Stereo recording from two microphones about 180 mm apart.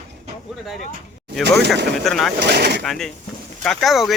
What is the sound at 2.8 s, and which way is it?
Speech, centre (ahead or behind).